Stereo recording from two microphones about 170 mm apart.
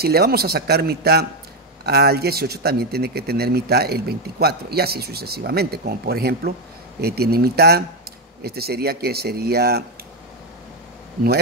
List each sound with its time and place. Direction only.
0.0 s speech: 65° right (ahead or behind)